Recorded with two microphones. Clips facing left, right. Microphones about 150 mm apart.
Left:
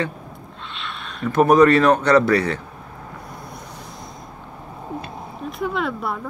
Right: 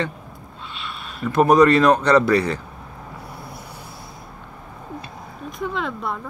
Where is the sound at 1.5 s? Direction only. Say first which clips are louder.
Even; 5° left (ahead or behind).